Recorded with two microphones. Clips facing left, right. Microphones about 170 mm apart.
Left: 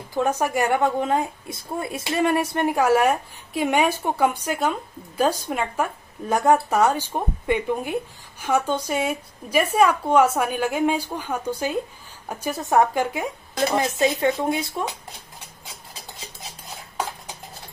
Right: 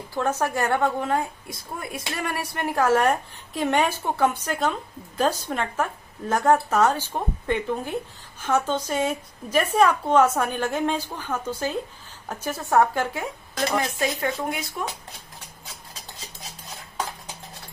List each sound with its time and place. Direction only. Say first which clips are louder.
0.1 s a woman's voice: left 3 dB; 15° left (ahead or behind)
13.7 s speech: left 6 dB; 25° left (ahead or behind)